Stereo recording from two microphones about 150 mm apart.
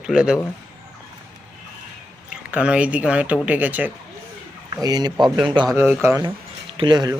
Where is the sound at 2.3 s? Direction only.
10° right (ahead or behind).